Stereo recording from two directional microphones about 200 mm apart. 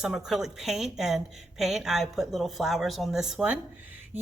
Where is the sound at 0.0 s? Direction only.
5° right (ahead or behind).